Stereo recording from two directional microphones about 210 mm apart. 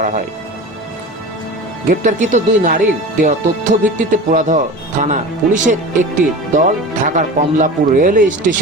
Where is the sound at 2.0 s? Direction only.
35° right (ahead or behind).